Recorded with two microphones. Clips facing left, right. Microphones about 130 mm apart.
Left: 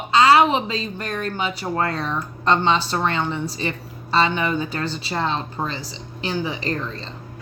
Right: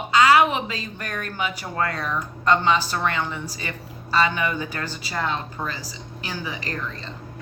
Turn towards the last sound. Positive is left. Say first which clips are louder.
# left 5 dB
turn(degrees=30)  # may be behind; listen again after turning